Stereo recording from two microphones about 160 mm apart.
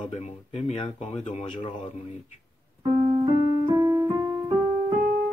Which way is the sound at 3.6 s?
20° right (ahead or behind).